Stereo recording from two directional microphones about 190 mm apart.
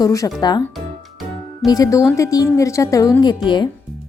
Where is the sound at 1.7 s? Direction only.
20° left (ahead or behind).